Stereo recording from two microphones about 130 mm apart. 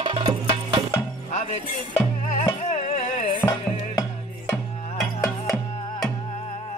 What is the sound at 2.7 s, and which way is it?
Carnatic music, 65° left (ahead or behind).